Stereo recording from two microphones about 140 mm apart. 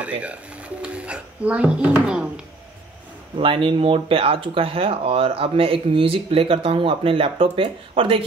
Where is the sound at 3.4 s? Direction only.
40° right (ahead or behind).